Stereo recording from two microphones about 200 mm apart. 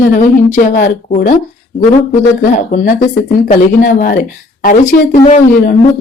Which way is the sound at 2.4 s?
40° left (ahead or behind).